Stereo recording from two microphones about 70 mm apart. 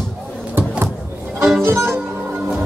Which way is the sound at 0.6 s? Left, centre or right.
Right.